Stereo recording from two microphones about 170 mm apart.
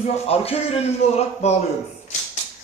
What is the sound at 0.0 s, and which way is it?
Speech, 35° left (ahead or behind).